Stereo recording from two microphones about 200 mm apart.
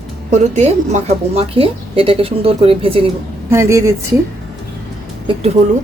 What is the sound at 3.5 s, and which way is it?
Speech, 15° right (ahead or behind).